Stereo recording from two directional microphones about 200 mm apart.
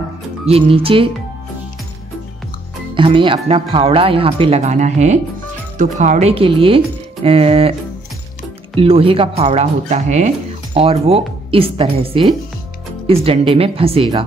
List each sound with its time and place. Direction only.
0.5 s speech: 30° right (ahead or behind)
2.9 s speech: 25° right (ahead or behind)
8.7 s speech: 30° right (ahead or behind)